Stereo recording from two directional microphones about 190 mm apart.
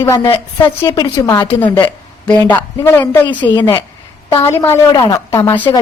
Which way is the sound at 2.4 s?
10° left (ahead or behind).